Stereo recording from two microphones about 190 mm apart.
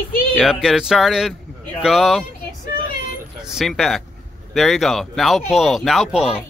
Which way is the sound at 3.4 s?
Centre (ahead or behind).